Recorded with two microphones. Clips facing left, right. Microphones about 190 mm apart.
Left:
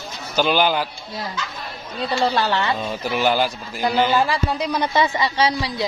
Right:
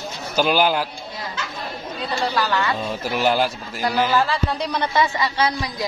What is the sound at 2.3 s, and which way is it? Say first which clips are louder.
Speech: left 1 dB; 25° left (ahead or behind).